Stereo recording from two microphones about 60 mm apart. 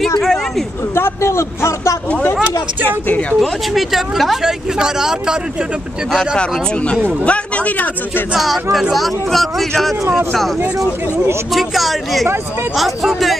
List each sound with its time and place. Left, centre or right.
0.2 s a sound: centre
0.9 s a sound: left
3.1 s a man's voice: left
3.3 s speech: centre
6.1 s a man's voice: centre
8.9 s speech: centre
11.5 s speech: centre